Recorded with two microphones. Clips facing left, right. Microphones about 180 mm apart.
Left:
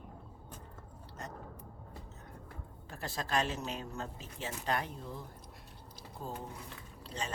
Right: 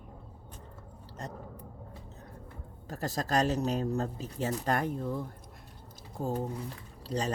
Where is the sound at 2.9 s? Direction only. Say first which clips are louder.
Right 5 dB; 40° right (ahead or behind).